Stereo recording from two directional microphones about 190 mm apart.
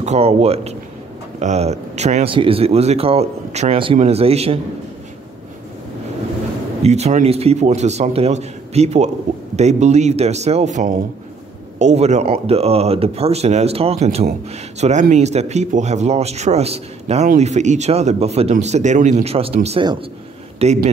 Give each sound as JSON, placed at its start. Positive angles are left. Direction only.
{"t": 0.0, "sound": "speech", "side_deg": -35}
{"t": 6.8, "sound": "a man's voice", "side_deg": -35}